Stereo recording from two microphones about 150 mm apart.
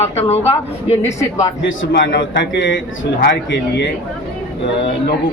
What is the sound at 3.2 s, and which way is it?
Speech, 80° left.